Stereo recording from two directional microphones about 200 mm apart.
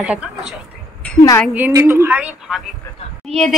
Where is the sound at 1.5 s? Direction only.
10° right (ahead or behind).